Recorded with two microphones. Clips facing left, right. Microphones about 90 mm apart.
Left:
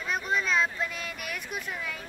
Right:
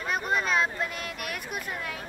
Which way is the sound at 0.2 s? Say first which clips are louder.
Right 1 dB; 50° right (ahead or behind).